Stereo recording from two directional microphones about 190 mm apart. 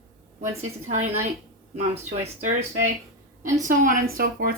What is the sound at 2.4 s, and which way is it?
Speech, 45° right (ahead or behind).